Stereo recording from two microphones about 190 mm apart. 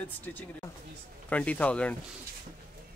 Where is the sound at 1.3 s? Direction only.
5° left (ahead or behind).